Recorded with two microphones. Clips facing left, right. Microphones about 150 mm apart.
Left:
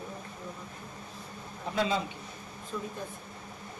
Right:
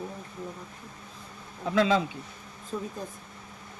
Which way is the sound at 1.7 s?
90° right.